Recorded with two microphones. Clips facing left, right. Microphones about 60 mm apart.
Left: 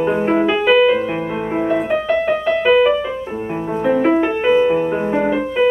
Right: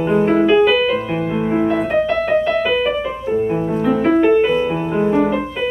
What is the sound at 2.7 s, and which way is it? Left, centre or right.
Music, centre.